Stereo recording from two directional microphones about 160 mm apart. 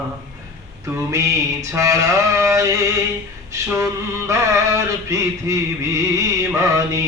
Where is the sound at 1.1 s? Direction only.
20° right (ahead or behind).